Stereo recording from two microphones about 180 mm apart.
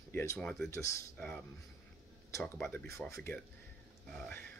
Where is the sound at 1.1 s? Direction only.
5° left (ahead or behind).